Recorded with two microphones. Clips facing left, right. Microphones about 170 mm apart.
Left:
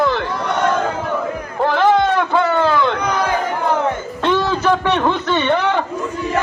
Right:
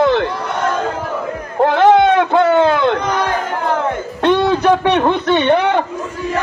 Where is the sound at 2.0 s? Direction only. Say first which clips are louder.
Right 4 dB; 60° right (ahead or behind).